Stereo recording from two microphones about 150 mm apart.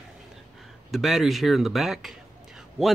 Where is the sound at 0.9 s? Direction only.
Centre (ahead or behind).